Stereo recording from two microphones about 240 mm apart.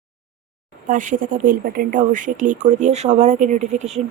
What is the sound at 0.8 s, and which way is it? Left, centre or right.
Speech, right.